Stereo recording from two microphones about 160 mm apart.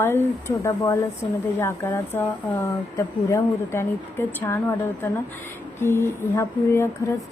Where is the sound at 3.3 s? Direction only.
15° left (ahead or behind).